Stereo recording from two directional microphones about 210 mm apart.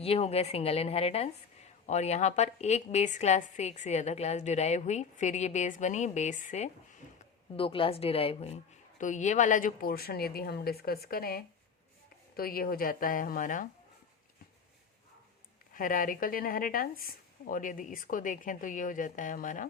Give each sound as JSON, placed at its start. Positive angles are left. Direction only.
{"t": 0.0, "sound": "a woman's voice", "side_deg": 30}
{"t": 7.2, "sound": "a woman's voice", "side_deg": 25}
{"t": 15.7, "sound": "a woman's voice", "side_deg": 40}